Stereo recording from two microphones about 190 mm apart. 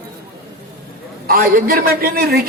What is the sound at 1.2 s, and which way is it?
A woman's voice, 50° right (ahead or behind).